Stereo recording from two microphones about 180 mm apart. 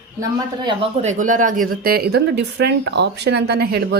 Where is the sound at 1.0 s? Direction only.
45° right (ahead or behind).